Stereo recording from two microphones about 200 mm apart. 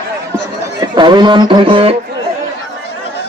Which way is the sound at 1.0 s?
20° right (ahead or behind).